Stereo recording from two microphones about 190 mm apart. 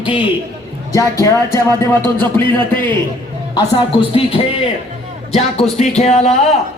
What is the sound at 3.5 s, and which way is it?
Speech, 25° left (ahead or behind).